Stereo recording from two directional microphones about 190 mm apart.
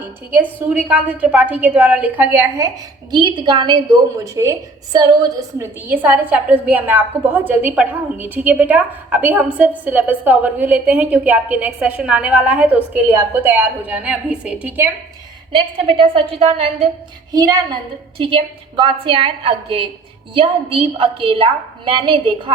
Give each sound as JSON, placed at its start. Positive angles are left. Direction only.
{"t": 0.7, "sound": "a woman's voice", "side_deg": -5}
{"t": 15.5, "sound": "a woman's voice", "side_deg": -25}
{"t": 17.3, "sound": "a woman's voice", "side_deg": -20}